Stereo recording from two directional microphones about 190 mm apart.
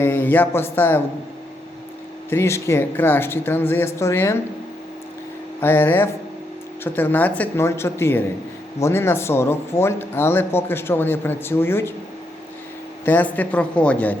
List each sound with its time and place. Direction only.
0.0 s speech: 10° left (ahead or behind)
2.3 s speech: 15° left (ahead or behind)
5.5 s speech: 10° left (ahead or behind)
13.1 s speech: 10° left (ahead or behind)